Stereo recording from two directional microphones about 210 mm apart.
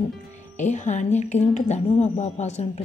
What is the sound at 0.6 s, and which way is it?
Speech, 35° left (ahead or behind).